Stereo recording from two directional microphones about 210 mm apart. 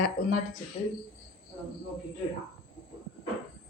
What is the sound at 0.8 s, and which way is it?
Speech, 30° left (ahead or behind).